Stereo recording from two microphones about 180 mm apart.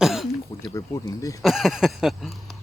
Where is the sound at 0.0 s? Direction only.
Centre (ahead or behind).